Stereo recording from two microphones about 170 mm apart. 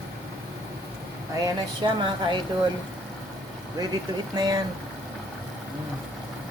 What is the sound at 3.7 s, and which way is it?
Speech, 25° right (ahead or behind).